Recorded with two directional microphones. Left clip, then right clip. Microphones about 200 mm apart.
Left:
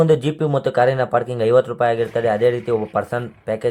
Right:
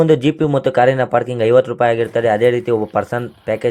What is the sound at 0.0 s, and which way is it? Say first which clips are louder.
Speech: right 3 dB; 10° right (ahead or behind).